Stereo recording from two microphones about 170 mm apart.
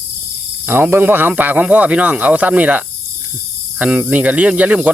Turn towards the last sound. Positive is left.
turn(degrees=-10)  # may be behind; listen again after turning